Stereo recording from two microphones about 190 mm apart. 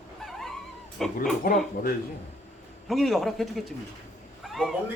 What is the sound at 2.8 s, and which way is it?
Speech, centre (ahead or behind).